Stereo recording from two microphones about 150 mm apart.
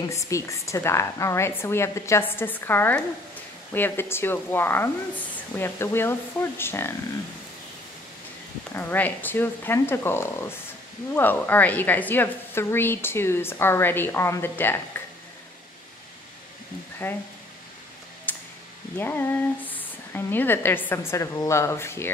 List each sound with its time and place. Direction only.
0.1 s a woman's voice: 20° left (ahead or behind)
8.7 s a woman's voice: 10° left (ahead or behind)
17.0 s a woman's voice: 15° left (ahead or behind)
18.3 s a sound: 10° left (ahead or behind)
18.9 s a woman's voice: 15° left (ahead or behind)